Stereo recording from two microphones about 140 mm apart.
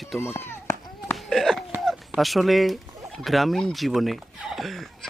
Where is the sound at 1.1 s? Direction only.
Centre (ahead or behind).